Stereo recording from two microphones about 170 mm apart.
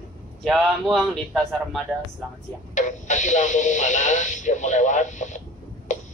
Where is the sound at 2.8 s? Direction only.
45° left (ahead or behind).